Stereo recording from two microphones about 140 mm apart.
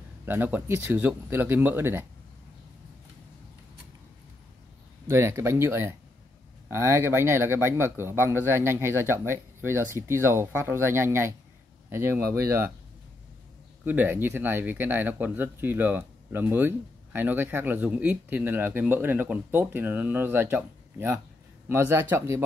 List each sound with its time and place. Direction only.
0.2 s speech: 15° right (ahead or behind)
5.0 s speech: 20° right (ahead or behind)
13.8 s speech: 15° right (ahead or behind)